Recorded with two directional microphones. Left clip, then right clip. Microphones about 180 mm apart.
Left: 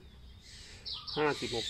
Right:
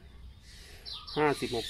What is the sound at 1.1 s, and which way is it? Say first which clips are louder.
Speech: right 3 dB; 50° right (ahead or behind).